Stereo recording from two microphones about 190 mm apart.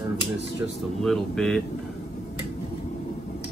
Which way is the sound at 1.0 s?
Centre (ahead or behind).